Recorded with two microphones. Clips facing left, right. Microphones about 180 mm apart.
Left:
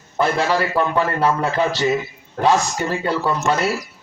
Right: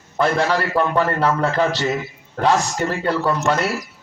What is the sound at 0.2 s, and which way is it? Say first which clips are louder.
A man's voice: even; 10° left (ahead or behind).